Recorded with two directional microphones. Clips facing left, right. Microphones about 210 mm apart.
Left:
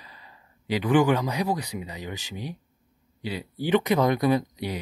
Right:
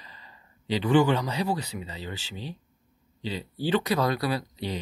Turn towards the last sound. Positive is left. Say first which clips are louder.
# left 6 dB
turn(degrees=15)  # may be behind; listen again after turning